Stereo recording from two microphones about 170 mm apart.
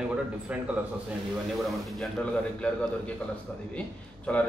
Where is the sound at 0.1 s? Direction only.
5° right (ahead or behind).